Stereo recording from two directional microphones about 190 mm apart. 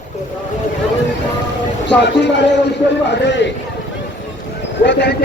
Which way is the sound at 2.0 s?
65° left (ahead or behind).